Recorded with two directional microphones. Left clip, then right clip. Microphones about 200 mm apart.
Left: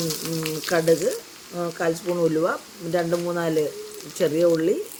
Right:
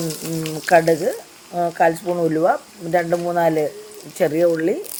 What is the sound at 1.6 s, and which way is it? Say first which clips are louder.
A woman's voice: right 8 dB; 20° right (ahead or behind).